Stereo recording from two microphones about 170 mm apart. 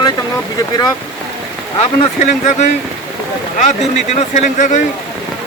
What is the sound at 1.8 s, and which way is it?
Speech, 45° left (ahead or behind).